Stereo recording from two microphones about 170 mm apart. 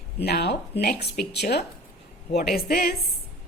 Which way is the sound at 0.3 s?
70° left (ahead or behind).